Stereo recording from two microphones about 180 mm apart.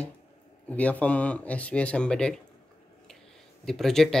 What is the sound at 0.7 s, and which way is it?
A man's voice, 10° left (ahead or behind).